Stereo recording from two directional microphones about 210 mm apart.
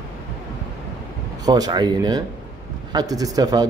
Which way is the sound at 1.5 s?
20° right (ahead or behind).